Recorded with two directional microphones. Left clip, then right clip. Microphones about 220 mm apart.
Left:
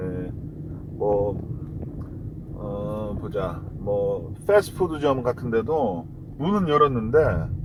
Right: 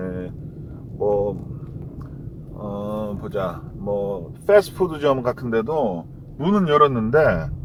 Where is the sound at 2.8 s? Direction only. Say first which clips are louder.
Right 5 dB; 25° right (ahead or behind).